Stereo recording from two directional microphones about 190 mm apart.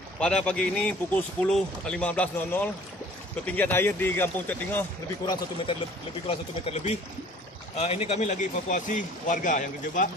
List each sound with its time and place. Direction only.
0.2 s speech: 5° left (ahead or behind)
5.2 s speech: 20° left (ahead or behind)
6.2 s a man's voice: 35° left (ahead or behind)